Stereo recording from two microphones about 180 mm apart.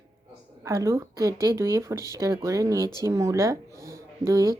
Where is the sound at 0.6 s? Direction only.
15° right (ahead or behind).